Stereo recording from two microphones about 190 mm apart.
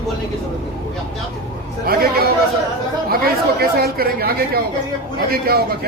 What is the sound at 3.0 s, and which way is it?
A man's voice, 55° right (ahead or behind).